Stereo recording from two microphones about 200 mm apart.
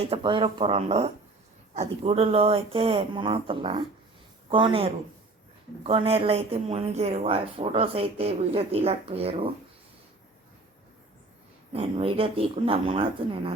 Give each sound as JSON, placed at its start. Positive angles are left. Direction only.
{"t": 0.0, "sound": "speech", "side_deg": -25}
{"t": 11.7, "sound": "speech", "side_deg": -30}